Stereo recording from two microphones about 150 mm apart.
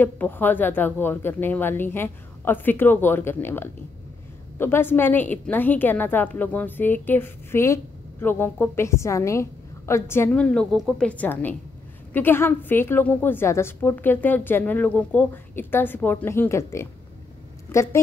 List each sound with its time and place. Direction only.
0.0 s a woman's voice: 15° left (ahead or behind)